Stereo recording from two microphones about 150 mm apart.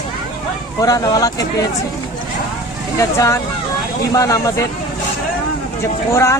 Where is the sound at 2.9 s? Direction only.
20° left (ahead or behind).